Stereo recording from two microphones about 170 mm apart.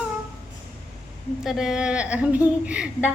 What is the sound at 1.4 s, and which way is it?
Speech, centre (ahead or behind).